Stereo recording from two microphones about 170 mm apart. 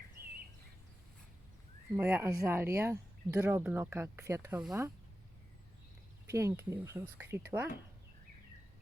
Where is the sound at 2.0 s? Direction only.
10° right (ahead or behind).